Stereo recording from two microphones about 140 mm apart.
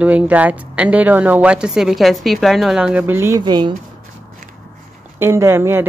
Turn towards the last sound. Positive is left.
turn(degrees=-15)  # may be behind; listen again after turning